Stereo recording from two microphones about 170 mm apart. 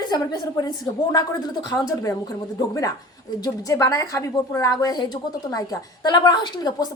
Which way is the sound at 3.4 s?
20° left (ahead or behind).